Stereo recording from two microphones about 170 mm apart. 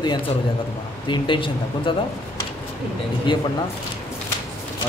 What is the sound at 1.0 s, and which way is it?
Speech, 30° left (ahead or behind).